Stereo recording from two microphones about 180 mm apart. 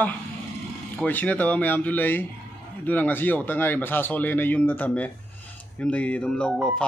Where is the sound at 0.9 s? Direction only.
10° left (ahead or behind).